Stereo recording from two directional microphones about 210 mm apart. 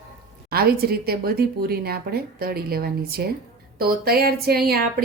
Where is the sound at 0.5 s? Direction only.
45° right (ahead or behind).